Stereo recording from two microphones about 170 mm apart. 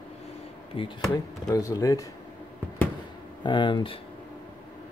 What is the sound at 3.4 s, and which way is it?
Speech, 30° left (ahead or behind).